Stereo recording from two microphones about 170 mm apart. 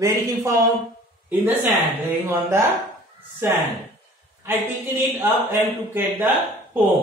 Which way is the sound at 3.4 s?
15° right (ahead or behind).